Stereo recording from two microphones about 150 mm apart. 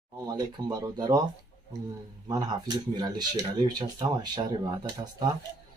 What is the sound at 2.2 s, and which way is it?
Speech, 25° right (ahead or behind).